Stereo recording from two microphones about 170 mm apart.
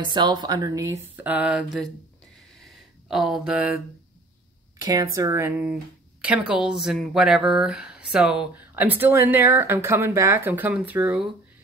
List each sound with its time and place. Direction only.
0.0 s speech: 25° right (ahead or behind); by 1.9 s 5° right (ahead or behind)
3.1 s speech: centre (ahead or behind)
4.7 s speech: 20° right (ahead or behind)
6.5 s speech: 5° right (ahead or behind)